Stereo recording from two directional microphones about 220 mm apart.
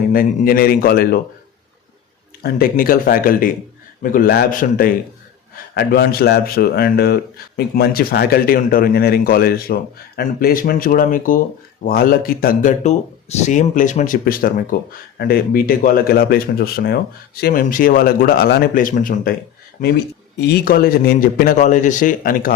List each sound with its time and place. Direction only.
0.1 s a man's voice: 40° left (ahead or behind)
2.4 s a man's voice: 40° left (ahead or behind)
20.4 s speech: 45° left (ahead or behind)